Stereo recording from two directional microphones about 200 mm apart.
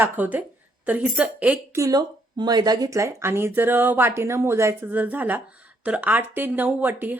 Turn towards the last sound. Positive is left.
turn(degrees=-10)  # may be behind; listen again after turning